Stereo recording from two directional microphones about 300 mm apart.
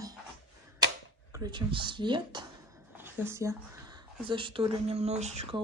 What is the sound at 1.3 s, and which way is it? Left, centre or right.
Speech, centre.